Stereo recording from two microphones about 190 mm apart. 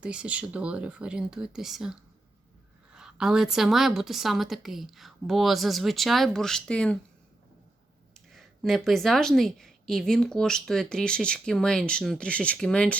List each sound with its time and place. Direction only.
0.0 s a woman's voice: 5° right (ahead or behind)
8.3 s a woman's voice: centre (ahead or behind)